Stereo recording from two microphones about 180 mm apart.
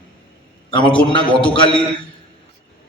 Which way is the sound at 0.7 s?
25° left (ahead or behind).